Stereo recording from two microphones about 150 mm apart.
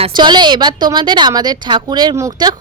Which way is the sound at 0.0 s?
30° right (ahead or behind).